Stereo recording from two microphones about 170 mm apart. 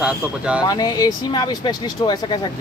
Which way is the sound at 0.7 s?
25° left (ahead or behind).